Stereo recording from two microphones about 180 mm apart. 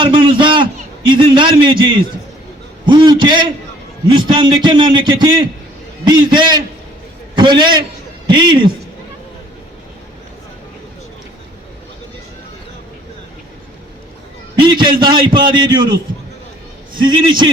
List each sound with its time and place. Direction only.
0.0 s a sound: 25° right (ahead or behind)
1.1 s a man's voice: 25° right (ahead or behind)
14.8 s a man's voice: 25° right (ahead or behind)